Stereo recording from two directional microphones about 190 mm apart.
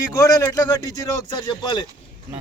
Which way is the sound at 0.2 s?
20° left (ahead or behind).